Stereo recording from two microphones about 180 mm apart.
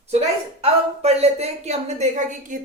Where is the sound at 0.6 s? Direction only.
35° right (ahead or behind).